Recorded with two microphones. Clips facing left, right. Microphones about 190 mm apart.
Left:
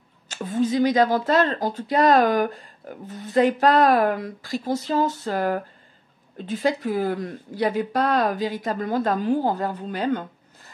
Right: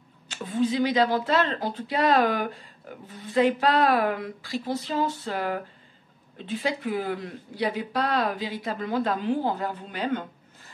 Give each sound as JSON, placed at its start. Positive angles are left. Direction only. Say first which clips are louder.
{"t": 0.3, "sound": "a woman's voice", "louder": "left 3 dB", "side_deg": 40}